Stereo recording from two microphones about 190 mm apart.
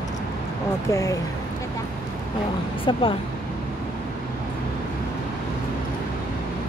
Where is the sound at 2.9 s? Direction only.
25° left (ahead or behind).